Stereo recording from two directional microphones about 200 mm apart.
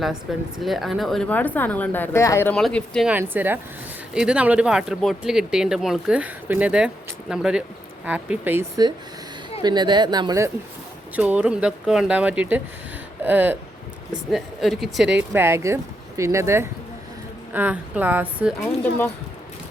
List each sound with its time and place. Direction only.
0.3 s speech: centre (ahead or behind)
15.3 s speech: 10° right (ahead or behind)
18.8 s speech: 10° left (ahead or behind)